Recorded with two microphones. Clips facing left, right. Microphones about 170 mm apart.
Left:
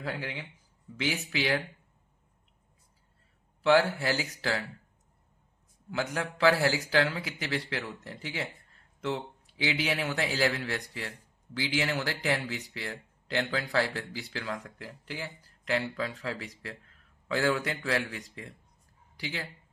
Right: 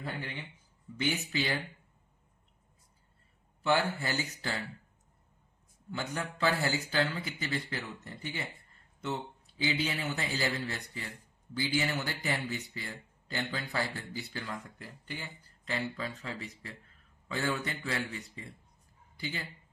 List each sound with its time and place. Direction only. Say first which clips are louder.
0.0 s speech: left 3 dB; 90° left
3.6 s speech: left 6 dB; 90° left
6.1 s speech: left 6 dB; 90° left